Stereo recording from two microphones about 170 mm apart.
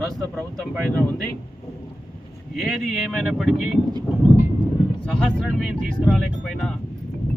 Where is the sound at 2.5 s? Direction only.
Centre (ahead or behind).